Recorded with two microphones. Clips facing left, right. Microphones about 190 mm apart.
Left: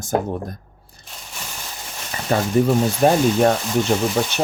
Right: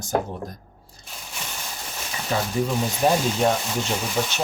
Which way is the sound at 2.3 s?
50° left (ahead or behind).